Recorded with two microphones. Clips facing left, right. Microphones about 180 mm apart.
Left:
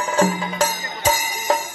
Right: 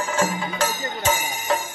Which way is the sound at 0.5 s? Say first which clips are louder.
Left 2 dB; 40° left (ahead or behind).